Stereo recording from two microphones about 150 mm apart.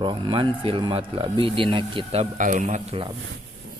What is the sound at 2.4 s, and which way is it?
Speech, 55° right (ahead or behind).